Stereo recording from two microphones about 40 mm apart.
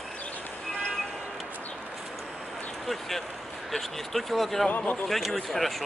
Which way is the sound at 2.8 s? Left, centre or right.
Centre.